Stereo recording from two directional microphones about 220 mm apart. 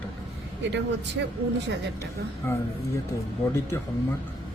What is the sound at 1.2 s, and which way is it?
Speech, 55° right (ahead or behind).